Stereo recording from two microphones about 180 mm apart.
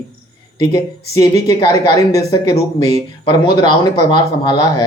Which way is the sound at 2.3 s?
30° left (ahead or behind).